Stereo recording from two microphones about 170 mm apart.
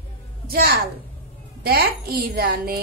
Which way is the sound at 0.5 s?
65° right (ahead or behind).